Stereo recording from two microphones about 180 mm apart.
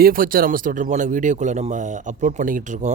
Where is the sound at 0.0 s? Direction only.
50° right (ahead or behind).